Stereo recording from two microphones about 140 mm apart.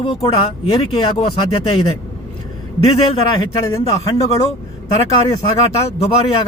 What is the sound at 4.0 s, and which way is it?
Speech, 25° left (ahead or behind).